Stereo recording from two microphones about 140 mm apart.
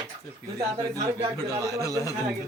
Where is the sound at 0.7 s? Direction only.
30° right (ahead or behind).